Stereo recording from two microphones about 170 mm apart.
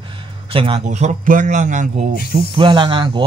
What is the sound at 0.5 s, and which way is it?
Speech, 35° right (ahead or behind).